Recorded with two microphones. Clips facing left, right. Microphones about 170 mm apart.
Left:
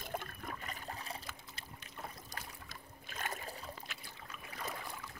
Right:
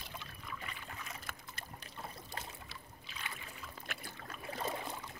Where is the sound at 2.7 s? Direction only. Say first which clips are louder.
Left 1 dB; 45° left (ahead or behind).